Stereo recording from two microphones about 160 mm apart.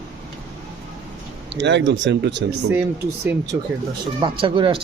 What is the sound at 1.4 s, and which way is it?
Speech, 90° right.